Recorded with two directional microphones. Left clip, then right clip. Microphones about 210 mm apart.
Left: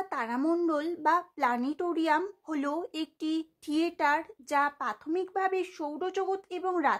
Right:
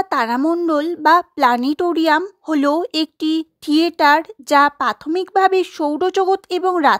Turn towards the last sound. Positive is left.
turn(degrees=-40)  # may be behind; listen again after turning